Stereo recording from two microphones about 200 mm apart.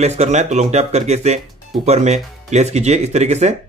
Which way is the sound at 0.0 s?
35° right (ahead or behind).